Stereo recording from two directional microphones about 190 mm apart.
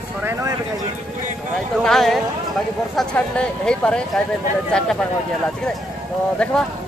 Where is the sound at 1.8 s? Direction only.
Centre (ahead or behind).